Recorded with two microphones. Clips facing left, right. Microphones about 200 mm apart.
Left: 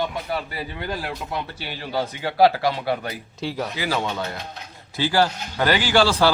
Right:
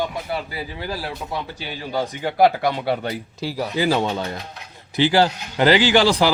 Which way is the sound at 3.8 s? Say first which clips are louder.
Right 6 dB; 25° right (ahead or behind).